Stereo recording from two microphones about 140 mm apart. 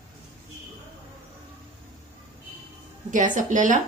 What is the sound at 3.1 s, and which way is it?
Speech, 65° right (ahead or behind).